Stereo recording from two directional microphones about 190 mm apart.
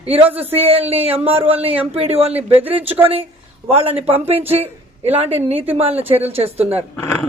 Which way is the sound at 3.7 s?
30° right (ahead or behind).